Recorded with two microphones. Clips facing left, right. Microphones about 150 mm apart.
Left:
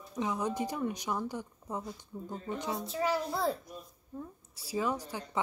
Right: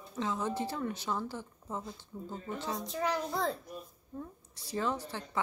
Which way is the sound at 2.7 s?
Centre (ahead or behind).